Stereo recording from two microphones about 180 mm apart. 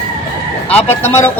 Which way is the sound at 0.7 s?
10° left (ahead or behind).